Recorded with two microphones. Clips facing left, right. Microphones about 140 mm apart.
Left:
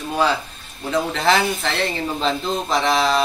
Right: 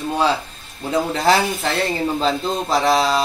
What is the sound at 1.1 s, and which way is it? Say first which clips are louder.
Speech: right 2 dB; 40° right (ahead or behind).